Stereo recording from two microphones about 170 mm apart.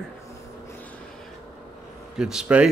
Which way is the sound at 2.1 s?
5° right (ahead or behind).